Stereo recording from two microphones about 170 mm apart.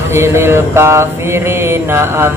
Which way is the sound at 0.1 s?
15° right (ahead or behind).